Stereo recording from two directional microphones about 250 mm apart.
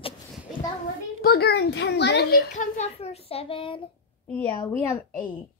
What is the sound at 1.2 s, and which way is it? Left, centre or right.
A child's voice, left.